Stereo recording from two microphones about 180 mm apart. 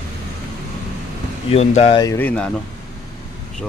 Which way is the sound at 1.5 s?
35° left (ahead or behind).